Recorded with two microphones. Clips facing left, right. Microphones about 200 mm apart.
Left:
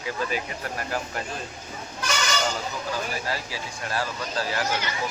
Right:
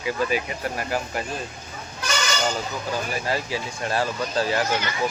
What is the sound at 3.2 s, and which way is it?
Speech, 20° right (ahead or behind).